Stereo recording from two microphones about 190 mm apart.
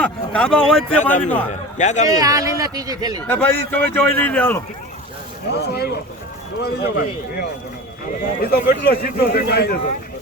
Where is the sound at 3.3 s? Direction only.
10° left (ahead or behind).